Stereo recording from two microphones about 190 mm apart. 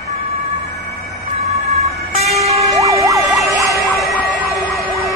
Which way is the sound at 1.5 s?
35° right (ahead or behind).